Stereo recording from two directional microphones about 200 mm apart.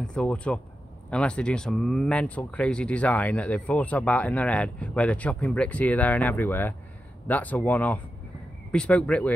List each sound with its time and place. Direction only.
0.0 s speech: 5° left (ahead or behind)